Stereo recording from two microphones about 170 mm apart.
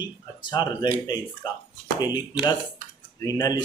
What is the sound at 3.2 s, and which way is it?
Speech, 20° left (ahead or behind).